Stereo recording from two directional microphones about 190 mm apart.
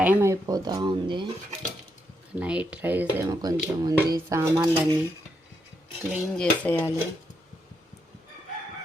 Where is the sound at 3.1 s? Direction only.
20° right (ahead or behind).